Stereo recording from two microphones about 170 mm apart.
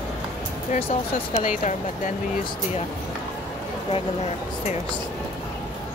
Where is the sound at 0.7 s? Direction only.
35° left (ahead or behind).